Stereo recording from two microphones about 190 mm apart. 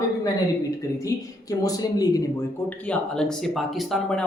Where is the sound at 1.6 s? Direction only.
20° left (ahead or behind).